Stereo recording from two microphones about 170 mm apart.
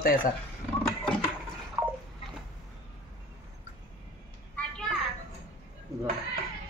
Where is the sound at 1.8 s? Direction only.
15° right (ahead or behind).